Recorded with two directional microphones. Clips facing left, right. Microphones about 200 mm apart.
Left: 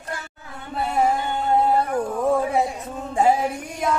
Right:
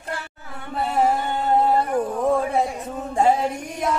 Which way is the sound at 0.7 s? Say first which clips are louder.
Right 1 dB; centre (ahead or behind).